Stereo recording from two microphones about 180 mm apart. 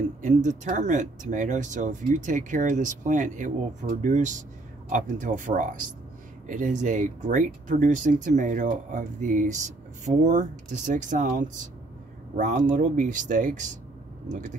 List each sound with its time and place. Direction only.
0.2 s speech: 45° right (ahead or behind)